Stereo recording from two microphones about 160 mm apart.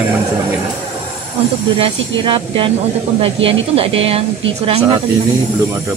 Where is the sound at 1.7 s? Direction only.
30° right (ahead or behind).